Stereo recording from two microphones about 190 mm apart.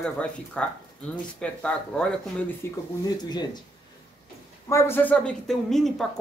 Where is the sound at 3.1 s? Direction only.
20° left (ahead or behind).